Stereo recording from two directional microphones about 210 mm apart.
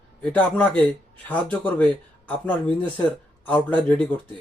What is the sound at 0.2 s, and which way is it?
Speech, 5° left (ahead or behind).